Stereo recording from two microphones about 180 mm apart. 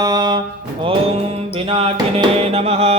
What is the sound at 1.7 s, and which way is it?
Music, 25° right (ahead or behind).